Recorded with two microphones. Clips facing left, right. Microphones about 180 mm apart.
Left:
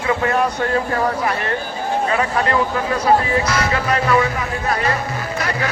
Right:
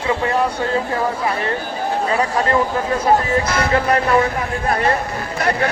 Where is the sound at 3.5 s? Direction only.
55° right (ahead or behind).